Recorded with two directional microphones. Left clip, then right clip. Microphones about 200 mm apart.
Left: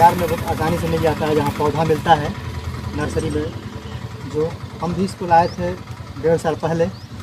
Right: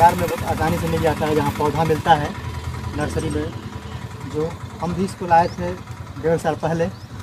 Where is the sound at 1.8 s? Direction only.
5° right (ahead or behind).